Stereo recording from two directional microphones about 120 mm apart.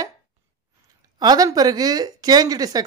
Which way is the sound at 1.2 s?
35° right (ahead or behind).